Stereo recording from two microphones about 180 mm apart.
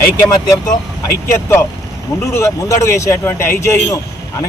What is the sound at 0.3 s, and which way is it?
Speech, 20° left (ahead or behind).